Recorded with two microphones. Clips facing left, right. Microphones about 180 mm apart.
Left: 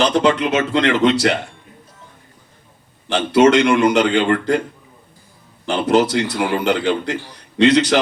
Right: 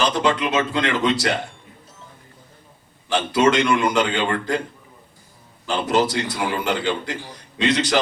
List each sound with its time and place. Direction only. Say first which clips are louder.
0.0 s a man's voice: left 5 dB; 65° left (ahead or behind)
3.1 s a man's voice: left 5 dB; 70° left (ahead or behind)
5.6 s a man's voice: left 4 dB; 65° left (ahead or behind)